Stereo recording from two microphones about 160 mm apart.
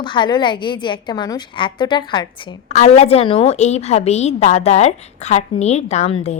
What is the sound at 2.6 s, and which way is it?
A woman's voice, 45° left (ahead or behind).